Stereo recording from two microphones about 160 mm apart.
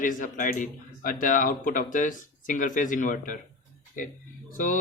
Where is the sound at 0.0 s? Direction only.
55° left (ahead or behind).